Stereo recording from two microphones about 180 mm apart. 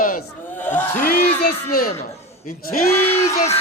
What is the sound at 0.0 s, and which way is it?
Battle cry, 50° left (ahead or behind).